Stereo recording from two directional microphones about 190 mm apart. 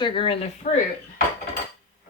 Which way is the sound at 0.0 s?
25° left (ahead or behind).